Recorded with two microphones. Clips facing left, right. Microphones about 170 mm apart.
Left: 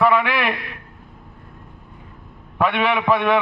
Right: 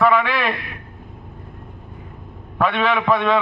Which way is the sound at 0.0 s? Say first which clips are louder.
Even; 10° left (ahead or behind).